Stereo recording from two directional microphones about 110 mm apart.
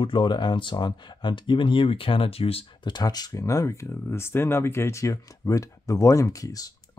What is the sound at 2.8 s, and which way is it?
Speech, 40° left (ahead or behind).